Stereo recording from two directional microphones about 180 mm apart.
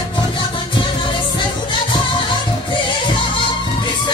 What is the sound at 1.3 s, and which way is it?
Music, 25° left (ahead or behind).